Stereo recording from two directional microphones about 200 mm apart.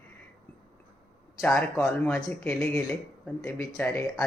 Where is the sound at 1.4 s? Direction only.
10° left (ahead or behind).